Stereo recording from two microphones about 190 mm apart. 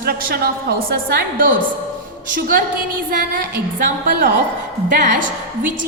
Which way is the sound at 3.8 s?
45° right (ahead or behind).